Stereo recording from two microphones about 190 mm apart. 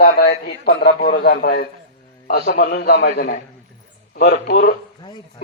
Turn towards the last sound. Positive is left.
turn(degrees=25)  # may be behind; listen again after turning